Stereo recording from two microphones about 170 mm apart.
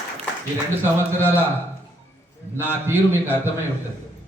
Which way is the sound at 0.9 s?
15° right (ahead or behind).